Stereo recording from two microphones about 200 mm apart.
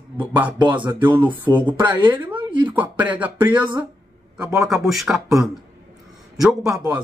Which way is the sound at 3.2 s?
10° right (ahead or behind).